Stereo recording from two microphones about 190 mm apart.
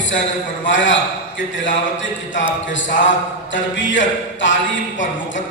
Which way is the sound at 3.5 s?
75° left (ahead or behind).